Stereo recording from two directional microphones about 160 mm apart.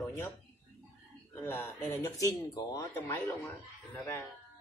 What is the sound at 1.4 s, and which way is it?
Speech, 10° left (ahead or behind).